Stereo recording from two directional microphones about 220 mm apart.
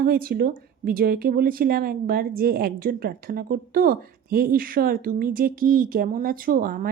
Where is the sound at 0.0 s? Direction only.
40° right (ahead or behind).